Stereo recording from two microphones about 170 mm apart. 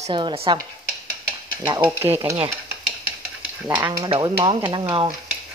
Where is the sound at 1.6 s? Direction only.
15° right (ahead or behind).